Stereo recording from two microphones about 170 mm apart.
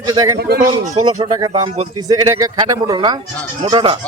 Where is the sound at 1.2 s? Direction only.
25° right (ahead or behind).